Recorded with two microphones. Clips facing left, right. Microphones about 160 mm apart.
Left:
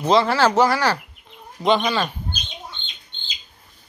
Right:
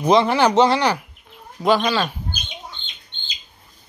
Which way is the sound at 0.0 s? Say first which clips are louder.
Right 1 dB; 20° right (ahead or behind).